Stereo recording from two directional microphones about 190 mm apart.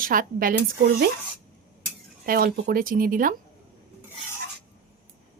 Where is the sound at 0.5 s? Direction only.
60° right (ahead or behind).